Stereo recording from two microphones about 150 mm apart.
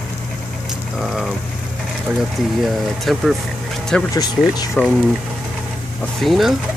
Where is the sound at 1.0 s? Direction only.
Centre (ahead or behind).